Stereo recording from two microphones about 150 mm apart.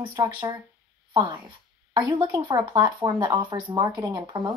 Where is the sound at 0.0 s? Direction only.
25° right (ahead or behind).